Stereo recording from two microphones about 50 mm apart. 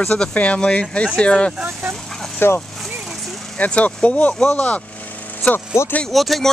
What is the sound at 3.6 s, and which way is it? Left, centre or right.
Speech, left.